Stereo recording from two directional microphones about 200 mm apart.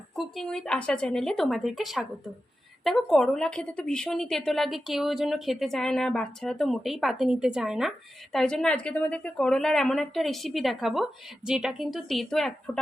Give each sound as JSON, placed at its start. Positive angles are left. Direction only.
{"t": 0.2, "sound": "a woman's voice", "side_deg": 0}